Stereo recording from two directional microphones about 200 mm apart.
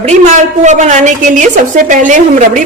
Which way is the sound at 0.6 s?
35° right (ahead or behind).